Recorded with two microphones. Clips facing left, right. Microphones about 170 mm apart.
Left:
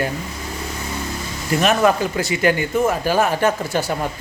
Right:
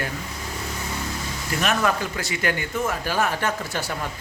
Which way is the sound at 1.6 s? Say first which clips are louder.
Left 7 dB; 20° left (ahead or behind).